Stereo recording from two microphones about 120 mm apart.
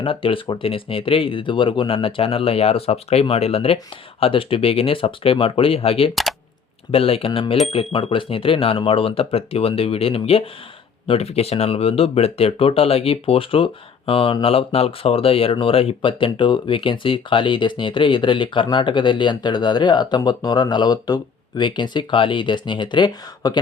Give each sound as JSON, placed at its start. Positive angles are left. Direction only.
{"t": 0.0, "sound": "speech", "side_deg": 50}